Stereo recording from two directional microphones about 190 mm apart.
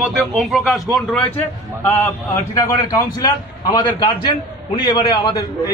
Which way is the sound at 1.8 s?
15° left (ahead or behind).